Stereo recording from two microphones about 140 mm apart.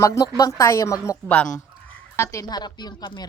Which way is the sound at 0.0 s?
20° left (ahead or behind).